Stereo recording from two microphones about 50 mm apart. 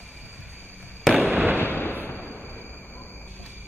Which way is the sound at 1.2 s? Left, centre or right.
Right.